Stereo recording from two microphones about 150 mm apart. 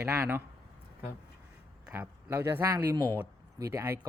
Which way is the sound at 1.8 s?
10° right (ahead or behind).